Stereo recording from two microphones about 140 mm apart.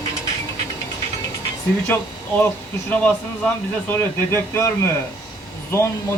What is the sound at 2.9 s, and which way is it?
Speech, 10° left (ahead or behind).